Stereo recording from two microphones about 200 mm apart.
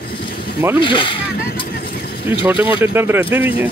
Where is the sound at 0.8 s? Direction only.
25° left (ahead or behind).